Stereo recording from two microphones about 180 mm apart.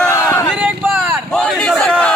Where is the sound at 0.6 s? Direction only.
10° right (ahead or behind).